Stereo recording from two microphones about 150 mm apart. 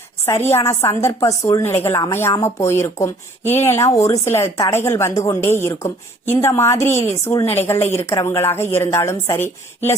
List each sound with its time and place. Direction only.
0.5 s a woman's voice: 20° left (ahead or behind)